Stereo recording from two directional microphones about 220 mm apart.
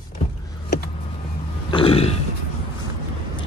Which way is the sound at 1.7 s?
25° left (ahead or behind).